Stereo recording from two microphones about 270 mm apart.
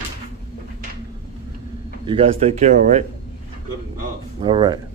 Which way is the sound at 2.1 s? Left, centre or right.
Right.